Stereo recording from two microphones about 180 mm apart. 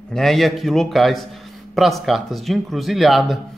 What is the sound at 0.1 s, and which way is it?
Speech, centre (ahead or behind).